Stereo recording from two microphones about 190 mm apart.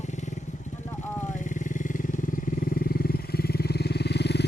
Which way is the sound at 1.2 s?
40° left (ahead or behind).